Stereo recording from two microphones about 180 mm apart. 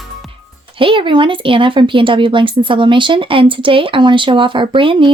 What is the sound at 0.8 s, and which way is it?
Speech, 30° right (ahead or behind).